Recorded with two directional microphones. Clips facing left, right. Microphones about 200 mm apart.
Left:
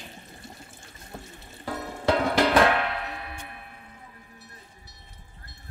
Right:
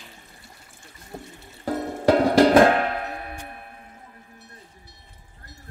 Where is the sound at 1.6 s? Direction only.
35° right (ahead or behind).